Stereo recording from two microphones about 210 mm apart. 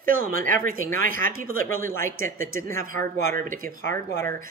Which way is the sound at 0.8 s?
75° left (ahead or behind).